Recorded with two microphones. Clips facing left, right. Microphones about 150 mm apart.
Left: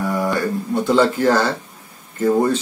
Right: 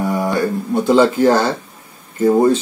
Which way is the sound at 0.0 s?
15° right (ahead or behind).